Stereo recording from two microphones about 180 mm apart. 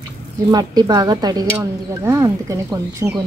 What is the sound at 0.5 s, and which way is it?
Speech, 20° right (ahead or behind).